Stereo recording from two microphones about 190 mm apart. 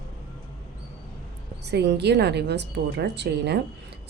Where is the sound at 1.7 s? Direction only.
60° right (ahead or behind).